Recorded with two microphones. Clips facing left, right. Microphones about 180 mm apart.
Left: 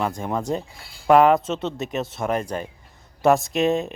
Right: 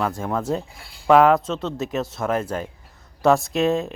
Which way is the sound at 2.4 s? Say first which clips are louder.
Right 1 dB; 15° left (ahead or behind).